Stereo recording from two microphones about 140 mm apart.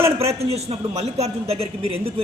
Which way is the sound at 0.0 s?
20° right (ahead or behind).